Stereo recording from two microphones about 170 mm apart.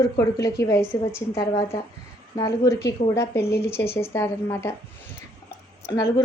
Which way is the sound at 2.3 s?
20° left (ahead or behind).